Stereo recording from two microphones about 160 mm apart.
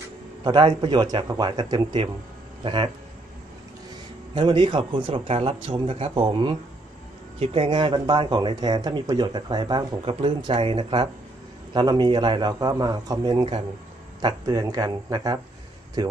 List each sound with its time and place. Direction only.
0.4 s speech: 30° right (ahead or behind)
4.4 s speech: 30° right (ahead or behind)